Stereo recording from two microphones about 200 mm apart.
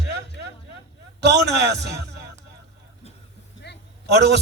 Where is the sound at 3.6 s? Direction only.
55° left (ahead or behind).